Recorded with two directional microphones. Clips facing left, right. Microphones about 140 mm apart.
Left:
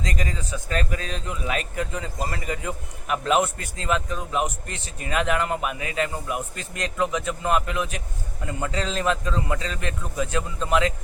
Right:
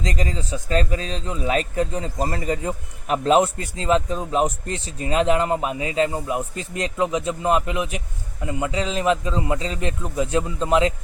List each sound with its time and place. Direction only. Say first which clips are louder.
0.0 s a man's voice: right 3 dB; 30° right (ahead or behind)